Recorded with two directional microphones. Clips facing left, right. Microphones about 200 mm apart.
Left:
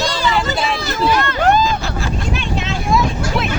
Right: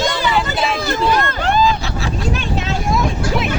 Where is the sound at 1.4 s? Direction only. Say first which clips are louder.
Left 4 dB; 45° left (ahead or behind).